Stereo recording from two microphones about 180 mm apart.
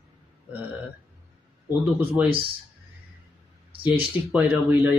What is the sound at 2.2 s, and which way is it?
Speech, 10° right (ahead or behind).